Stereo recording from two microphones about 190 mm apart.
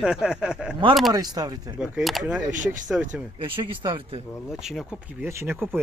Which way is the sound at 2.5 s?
45° right (ahead or behind).